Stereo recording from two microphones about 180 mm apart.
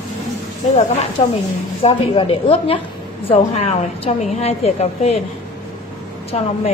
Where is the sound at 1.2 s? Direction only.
30° left (ahead or behind).